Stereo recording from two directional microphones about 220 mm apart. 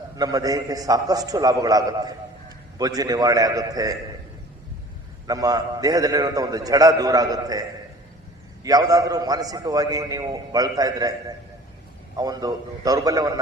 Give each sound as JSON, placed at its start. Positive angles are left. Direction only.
{"t": 0.2, "sound": "a man's voice", "side_deg": -15}
{"t": 5.2, "sound": "a man's voice", "side_deg": -15}
{"t": 8.6, "sound": "a man's voice", "side_deg": -15}